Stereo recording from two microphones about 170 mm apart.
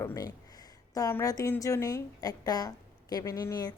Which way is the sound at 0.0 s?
20° left (ahead or behind).